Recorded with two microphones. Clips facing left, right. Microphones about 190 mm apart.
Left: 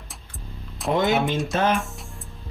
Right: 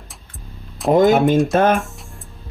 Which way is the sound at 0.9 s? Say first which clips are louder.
Right 9 dB; 45° right (ahead or behind).